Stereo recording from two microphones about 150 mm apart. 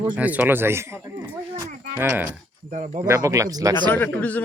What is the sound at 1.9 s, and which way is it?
Speech, 10° right (ahead or behind).